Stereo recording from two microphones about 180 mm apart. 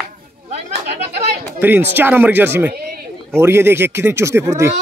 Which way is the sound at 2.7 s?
55° right (ahead or behind).